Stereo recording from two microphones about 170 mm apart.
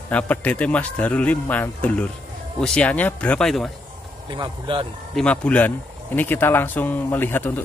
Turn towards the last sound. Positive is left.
turn(degrees=10)  # may be behind; listen again after turning